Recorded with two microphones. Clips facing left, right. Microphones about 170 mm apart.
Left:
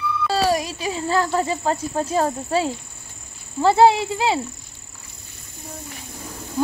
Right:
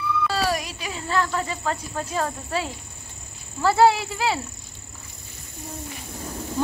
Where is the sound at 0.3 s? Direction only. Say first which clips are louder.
Left 5 dB; 30° left (ahead or behind).